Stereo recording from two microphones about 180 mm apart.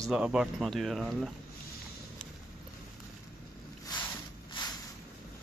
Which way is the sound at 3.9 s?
20° left (ahead or behind).